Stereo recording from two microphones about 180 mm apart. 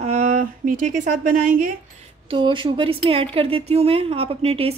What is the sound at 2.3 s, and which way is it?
A woman's voice, 25° right (ahead or behind).